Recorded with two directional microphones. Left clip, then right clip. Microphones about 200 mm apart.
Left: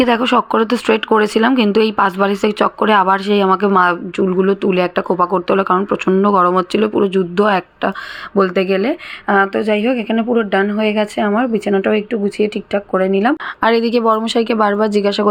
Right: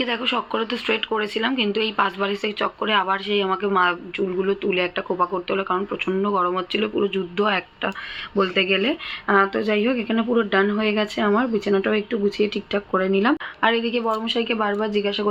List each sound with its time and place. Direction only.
0.0 s speech: 55° left (ahead or behind); by 13.3 s 25° left (ahead or behind)
13.6 s a woman's voice: 45° left (ahead or behind)